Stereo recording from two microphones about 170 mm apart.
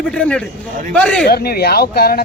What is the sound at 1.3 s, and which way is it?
Speech, 65° left (ahead or behind).